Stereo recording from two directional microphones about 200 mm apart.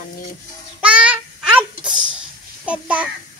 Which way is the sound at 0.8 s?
5° right (ahead or behind).